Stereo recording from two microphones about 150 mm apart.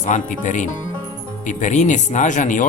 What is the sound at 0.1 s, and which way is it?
Speech, 55° left (ahead or behind).